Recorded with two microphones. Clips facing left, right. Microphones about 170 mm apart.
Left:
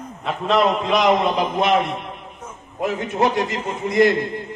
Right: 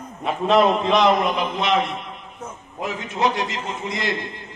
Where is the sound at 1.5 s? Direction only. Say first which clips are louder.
Left 3 dB; 50° left (ahead or behind).